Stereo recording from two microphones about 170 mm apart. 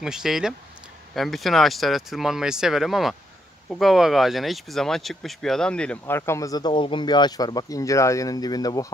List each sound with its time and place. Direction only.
0.0 s speech: 5° right (ahead or behind); by 8.8 s 20° left (ahead or behind)